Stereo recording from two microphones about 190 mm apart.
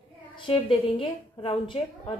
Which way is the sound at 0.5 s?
25° left (ahead or behind).